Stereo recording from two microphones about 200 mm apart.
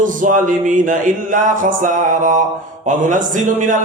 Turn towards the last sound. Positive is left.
turn(degrees=-40)  # may be behind; listen again after turning